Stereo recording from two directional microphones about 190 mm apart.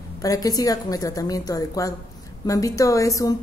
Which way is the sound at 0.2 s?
20° left (ahead or behind).